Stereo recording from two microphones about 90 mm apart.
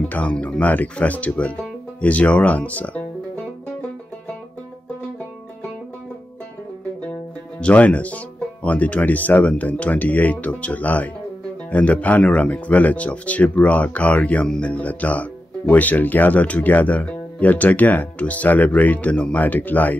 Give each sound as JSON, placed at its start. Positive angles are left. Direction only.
{"t": 0.1, "sound": "speech", "side_deg": 15}
{"t": 7.6, "sound": "speech", "side_deg": 15}